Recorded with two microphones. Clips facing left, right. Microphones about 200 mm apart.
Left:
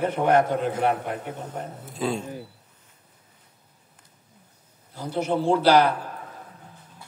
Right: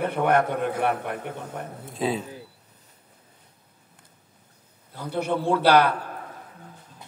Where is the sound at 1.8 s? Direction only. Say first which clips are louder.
Right 1 dB; centre (ahead or behind).